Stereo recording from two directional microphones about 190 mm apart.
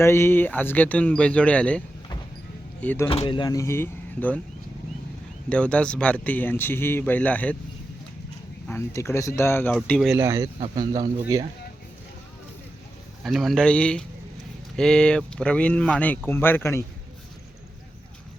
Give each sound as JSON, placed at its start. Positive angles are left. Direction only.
{"t": 0.0, "sound": "a man's voice", "side_deg": 15}
{"t": 2.8, "sound": "a man's voice", "side_deg": 10}
{"t": 3.1, "sound": "speech", "side_deg": 25}
{"t": 5.5, "sound": "a man's voice", "side_deg": 5}
{"t": 8.6, "sound": "a man's voice", "side_deg": 15}
{"t": 10.2, "sound": "speech", "side_deg": -15}
{"t": 13.2, "sound": "a man's voice", "side_deg": 0}